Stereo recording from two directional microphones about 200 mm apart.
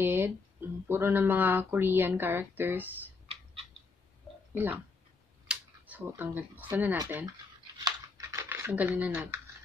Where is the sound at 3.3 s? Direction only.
25° right (ahead or behind).